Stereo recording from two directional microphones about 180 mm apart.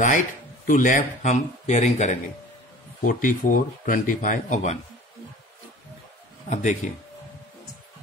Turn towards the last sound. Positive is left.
turn(degrees=45)  # may be behind; listen again after turning